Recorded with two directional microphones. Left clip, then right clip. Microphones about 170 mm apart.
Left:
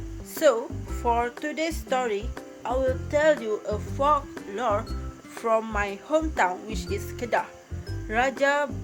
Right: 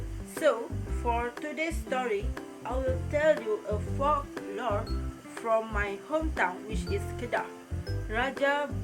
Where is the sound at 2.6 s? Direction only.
45° left (ahead or behind).